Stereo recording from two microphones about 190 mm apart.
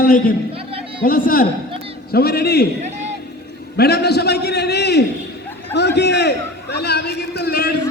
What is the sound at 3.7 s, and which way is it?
A man's voice, 55° left (ahead or behind).